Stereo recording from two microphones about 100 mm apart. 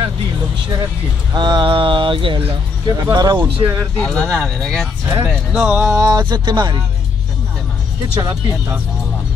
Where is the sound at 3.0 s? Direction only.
45° right (ahead or behind).